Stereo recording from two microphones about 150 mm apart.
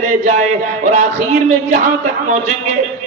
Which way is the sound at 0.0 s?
50° right (ahead or behind).